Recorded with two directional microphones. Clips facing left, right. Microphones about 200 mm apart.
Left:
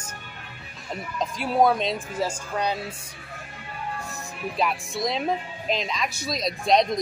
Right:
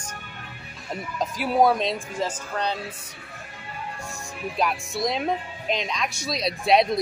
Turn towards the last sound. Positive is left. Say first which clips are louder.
# right 1 dB
turn(degrees=-5)  # may be behind; listen again after turning